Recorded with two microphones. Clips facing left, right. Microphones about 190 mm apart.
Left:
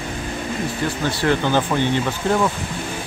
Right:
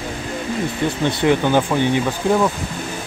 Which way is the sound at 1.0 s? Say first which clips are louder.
Right 3 dB; 15° right (ahead or behind).